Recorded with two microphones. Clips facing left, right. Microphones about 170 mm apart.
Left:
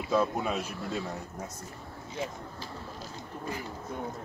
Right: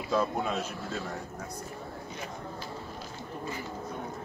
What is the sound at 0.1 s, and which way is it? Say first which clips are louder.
Speech: left 1 dB; 5° left (ahead or behind).